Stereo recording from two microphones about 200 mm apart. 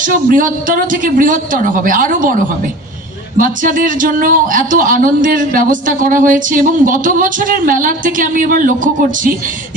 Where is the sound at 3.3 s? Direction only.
45° right (ahead or behind).